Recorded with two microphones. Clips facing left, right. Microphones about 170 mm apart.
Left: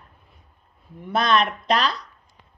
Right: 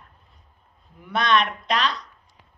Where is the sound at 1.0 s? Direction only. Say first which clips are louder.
Left 1 dB; 35° left (ahead or behind).